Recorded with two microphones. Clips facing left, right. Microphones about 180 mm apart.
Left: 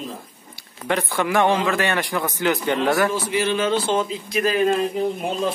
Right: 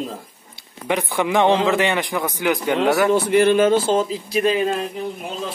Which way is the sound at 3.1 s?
60° right (ahead or behind).